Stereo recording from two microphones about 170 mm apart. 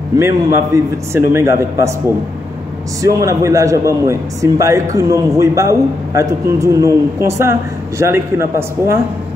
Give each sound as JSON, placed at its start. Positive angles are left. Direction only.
{"t": 0.2, "sound": "a man's voice", "side_deg": -15}
{"t": 3.0, "sound": "a man's voice", "side_deg": -20}